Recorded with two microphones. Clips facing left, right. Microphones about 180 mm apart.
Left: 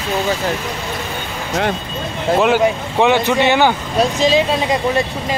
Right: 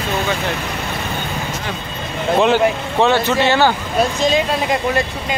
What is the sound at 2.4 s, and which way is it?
Speech, 10° left (ahead or behind).